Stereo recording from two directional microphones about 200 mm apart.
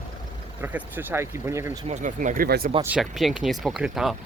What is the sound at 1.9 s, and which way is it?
Speech, 40° right (ahead or behind).